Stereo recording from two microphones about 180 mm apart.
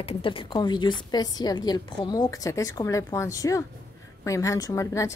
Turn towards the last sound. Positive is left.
turn(degrees=15)  # may be behind; listen again after turning